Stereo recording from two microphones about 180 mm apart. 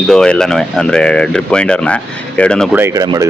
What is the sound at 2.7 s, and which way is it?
Speech, 15° right (ahead or behind).